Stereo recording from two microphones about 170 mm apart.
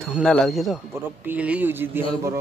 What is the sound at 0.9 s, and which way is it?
Speech, 10° right (ahead or behind).